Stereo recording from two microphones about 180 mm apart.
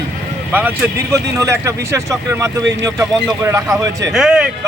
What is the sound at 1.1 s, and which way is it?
Speech, 15° right (ahead or behind).